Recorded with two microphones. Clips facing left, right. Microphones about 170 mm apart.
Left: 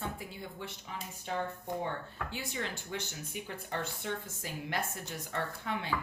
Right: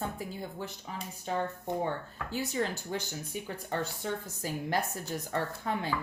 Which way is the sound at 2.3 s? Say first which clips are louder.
Right 8 dB; 40° right (ahead or behind).